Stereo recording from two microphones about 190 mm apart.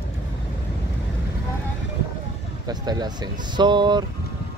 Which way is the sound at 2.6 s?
20° right (ahead or behind).